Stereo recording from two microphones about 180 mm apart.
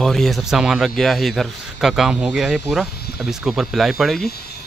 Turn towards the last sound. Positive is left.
turn(degrees=60)  # may be behind; listen again after turning